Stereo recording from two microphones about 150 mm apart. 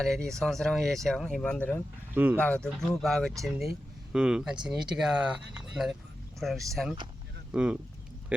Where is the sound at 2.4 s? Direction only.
5° left (ahead or behind).